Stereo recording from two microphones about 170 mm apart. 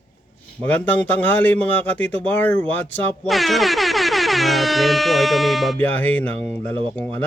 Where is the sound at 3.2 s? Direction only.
Centre (ahead or behind).